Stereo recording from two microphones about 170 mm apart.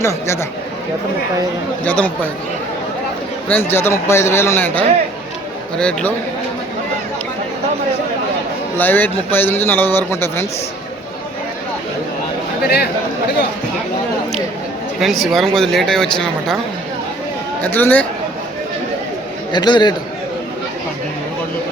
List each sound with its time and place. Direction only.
0.0 s a man's voice: 15° left (ahead or behind)
1.8 s a man's voice: 10° left (ahead or behind)
3.5 s a man's voice: 15° left (ahead or behind)
8.8 s a man's voice: 10° left (ahead or behind)
12.6 s speech: 70° left (ahead or behind)
15.0 s speech: centre (ahead or behind)
17.6 s a man's voice: 10° left (ahead or behind)
19.5 s a man's voice: 25° left (ahead or behind)